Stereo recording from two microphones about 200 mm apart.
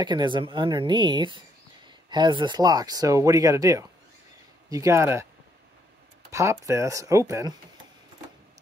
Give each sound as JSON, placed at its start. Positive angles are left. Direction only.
{"t": 0.0, "sound": "speech", "side_deg": -20}
{"t": 6.3, "sound": "speech", "side_deg": -15}